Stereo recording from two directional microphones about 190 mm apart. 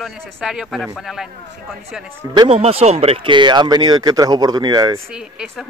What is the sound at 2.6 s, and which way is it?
Speech, 35° right (ahead or behind).